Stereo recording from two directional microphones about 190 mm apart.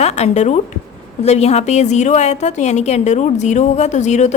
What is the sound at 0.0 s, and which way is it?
A woman's voice, 35° left (ahead or behind).